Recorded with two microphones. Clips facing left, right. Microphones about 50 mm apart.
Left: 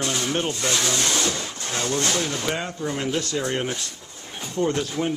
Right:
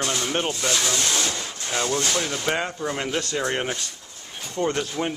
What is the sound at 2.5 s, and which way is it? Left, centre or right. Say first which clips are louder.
Speech: right 2 dB; centre.